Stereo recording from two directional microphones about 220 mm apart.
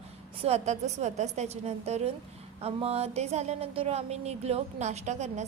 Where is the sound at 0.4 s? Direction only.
30° right (ahead or behind).